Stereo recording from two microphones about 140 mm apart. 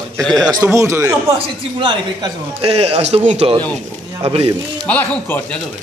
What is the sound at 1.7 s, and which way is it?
A man's voice, 35° right (ahead or behind).